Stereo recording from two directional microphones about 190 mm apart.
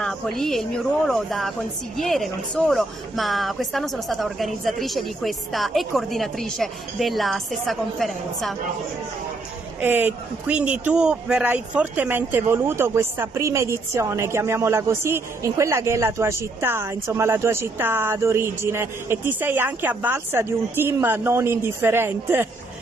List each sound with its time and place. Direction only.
0.0 s a woman's voice: centre (ahead or behind)
9.8 s a man's voice: 10° right (ahead or behind)